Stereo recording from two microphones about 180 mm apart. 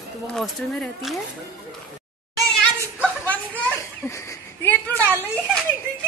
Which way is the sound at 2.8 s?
10° left (ahead or behind).